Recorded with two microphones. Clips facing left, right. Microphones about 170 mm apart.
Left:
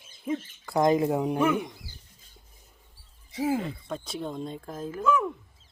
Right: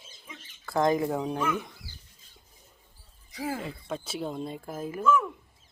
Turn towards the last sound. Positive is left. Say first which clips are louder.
# even
turn(degrees=15)  # may be behind; listen again after turning